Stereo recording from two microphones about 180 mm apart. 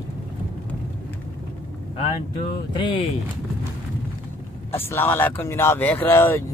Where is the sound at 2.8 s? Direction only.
25° left (ahead or behind).